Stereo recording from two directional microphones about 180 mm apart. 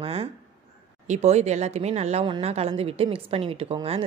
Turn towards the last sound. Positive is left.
turn(degrees=-30)  # may be behind; listen again after turning